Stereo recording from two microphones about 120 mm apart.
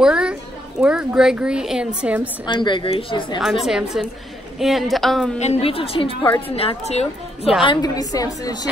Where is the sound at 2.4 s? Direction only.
40° left (ahead or behind).